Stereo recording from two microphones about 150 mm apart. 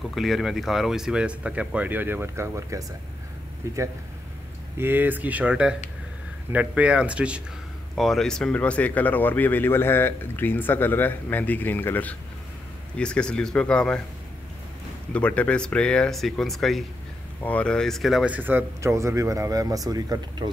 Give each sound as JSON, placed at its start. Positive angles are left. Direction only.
{"t": 0.1, "sound": "speech", "side_deg": 0}
{"t": 15.1, "sound": "speech", "side_deg": 10}